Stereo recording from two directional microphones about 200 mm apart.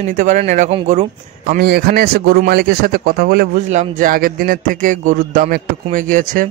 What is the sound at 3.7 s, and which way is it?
Speech, 40° right (ahead or behind).